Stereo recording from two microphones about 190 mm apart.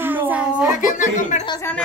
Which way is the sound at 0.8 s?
45° left (ahead or behind).